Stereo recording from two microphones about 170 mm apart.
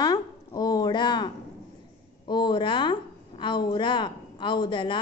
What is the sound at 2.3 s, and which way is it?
A woman's voice, 25° left (ahead or behind).